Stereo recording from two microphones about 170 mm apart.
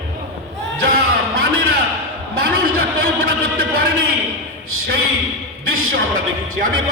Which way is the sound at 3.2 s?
60° right (ahead or behind).